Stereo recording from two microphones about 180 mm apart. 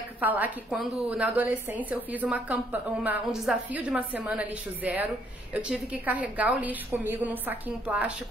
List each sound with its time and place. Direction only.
0.2 s a woman's voice: 10° right (ahead or behind)